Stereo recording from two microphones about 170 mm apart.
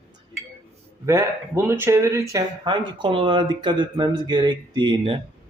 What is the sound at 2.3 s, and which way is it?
Speech, 25° right (ahead or behind).